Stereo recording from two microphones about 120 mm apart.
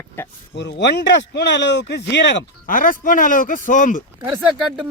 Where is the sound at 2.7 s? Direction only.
90° left.